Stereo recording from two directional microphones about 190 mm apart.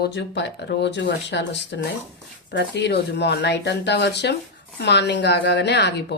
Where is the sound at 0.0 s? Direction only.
65° left (ahead or behind).